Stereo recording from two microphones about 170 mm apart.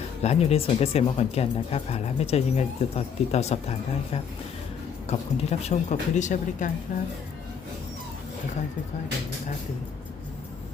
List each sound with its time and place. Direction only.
0.2 s speech: 40° left (ahead or behind)